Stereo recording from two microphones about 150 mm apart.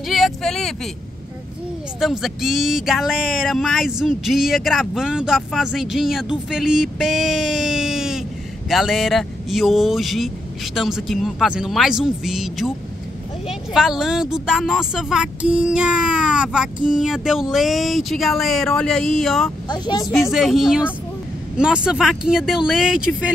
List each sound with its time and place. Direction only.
0.1 s a sound: centre (ahead or behind)
2.0 s speech: centre (ahead or behind)
19.7 s speech: 30° left (ahead or behind)
20.2 s speech: centre (ahead or behind)